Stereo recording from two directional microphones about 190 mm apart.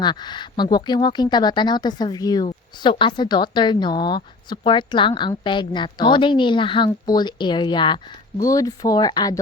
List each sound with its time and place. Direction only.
0.0 s speech: 25° left (ahead or behind)